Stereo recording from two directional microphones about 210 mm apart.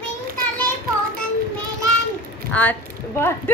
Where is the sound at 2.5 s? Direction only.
10° left (ahead or behind).